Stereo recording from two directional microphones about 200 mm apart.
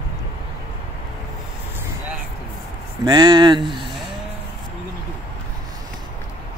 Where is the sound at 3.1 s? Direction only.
20° right (ahead or behind).